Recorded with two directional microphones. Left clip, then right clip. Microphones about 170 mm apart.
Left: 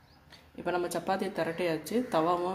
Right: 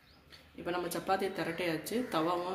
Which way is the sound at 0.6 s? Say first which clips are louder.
Left 4 dB; 60° left (ahead or behind).